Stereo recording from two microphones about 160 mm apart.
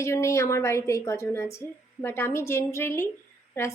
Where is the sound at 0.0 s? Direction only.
20° left (ahead or behind).